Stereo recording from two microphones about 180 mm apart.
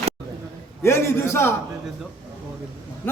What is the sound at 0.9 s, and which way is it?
Speech, 15° left (ahead or behind).